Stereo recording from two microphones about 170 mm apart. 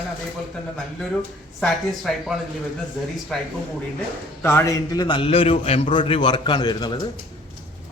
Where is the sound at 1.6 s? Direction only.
5° left (ahead or behind); by 7.0 s 25° left (ahead or behind).